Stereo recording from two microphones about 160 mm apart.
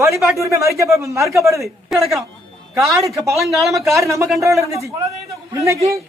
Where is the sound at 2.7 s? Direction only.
20° right (ahead or behind).